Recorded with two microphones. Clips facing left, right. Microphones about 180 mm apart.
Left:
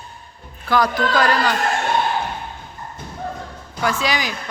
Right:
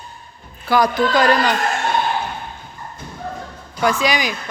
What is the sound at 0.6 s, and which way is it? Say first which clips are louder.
Speech: right 2 dB; 10° right (ahead or behind).